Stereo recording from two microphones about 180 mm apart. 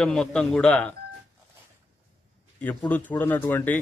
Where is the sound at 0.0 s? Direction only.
5° left (ahead or behind).